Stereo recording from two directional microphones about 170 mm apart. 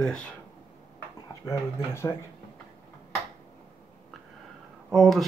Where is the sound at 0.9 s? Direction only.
15° left (ahead or behind).